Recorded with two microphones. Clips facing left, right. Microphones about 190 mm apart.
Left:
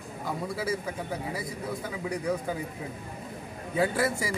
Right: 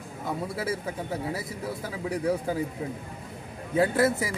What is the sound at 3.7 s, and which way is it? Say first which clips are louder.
Speech: right 4 dB; 25° right (ahead or behind).